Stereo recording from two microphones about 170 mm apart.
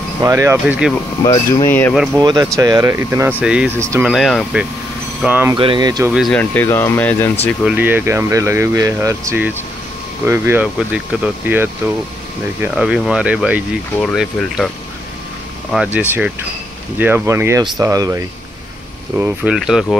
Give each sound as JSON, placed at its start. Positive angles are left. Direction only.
{"t": 0.2, "sound": "speech", "side_deg": -15}
{"t": 1.2, "sound": "speech", "side_deg": 25}
{"t": 1.7, "sound": "speech", "side_deg": 10}
{"t": 2.1, "sound": "speech", "side_deg": -20}
{"t": 5.5, "sound": "speech", "side_deg": -30}
{"t": 6.1, "sound": "speech", "side_deg": 5}
{"t": 7.6, "sound": "speech", "side_deg": -10}
{"t": 15.7, "sound": "speech", "side_deg": -5}
{"t": 19.1, "sound": "speech", "side_deg": -10}